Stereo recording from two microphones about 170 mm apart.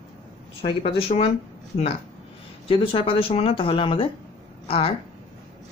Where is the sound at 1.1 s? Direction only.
45° left (ahead or behind).